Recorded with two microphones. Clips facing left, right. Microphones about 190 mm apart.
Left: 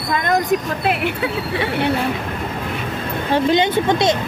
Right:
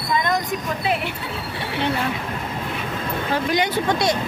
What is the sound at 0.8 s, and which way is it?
Speech, 75° left (ahead or behind).